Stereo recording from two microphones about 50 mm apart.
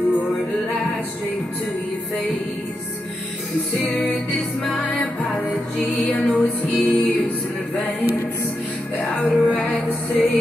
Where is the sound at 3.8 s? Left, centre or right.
Left.